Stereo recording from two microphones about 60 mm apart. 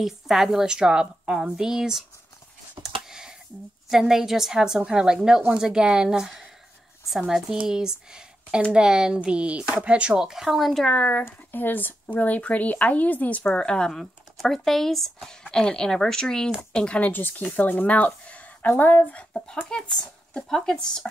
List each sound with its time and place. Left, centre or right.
0.0 s a woman's voice: centre
2.8 s a sound: centre
3.9 s a woman's voice: centre
10.2 s speech: centre
10.9 s speech: left
11.2 s speech: left
13.6 s speech: centre
15.4 s speech: centre
19.7 s speech: centre